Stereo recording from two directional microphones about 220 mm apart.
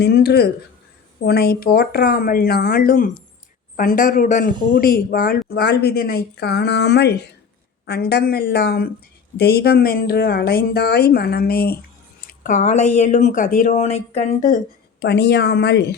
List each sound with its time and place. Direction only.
0.0 s speech: 45° left (ahead or behind)
15.0 s speech: 50° left (ahead or behind)